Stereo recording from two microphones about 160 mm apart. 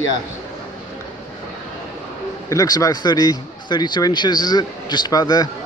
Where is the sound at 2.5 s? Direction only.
25° left (ahead or behind).